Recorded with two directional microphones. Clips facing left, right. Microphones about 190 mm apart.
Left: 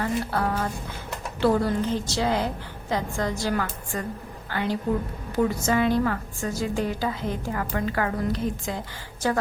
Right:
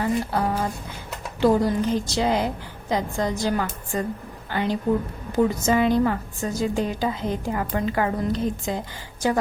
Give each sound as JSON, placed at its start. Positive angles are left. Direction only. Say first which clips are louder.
{"t": 0.0, "sound": "a woman's voice", "louder": "right 2 dB", "side_deg": -15}